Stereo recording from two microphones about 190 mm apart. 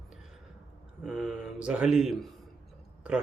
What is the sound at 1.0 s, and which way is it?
Speech, centre (ahead or behind).